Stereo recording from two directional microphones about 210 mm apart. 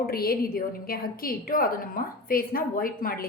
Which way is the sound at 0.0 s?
45° left (ahead or behind).